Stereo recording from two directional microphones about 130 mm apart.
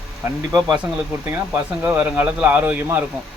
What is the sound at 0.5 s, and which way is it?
Speech, 30° right (ahead or behind).